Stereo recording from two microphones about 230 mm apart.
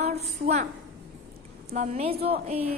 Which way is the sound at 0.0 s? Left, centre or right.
Right.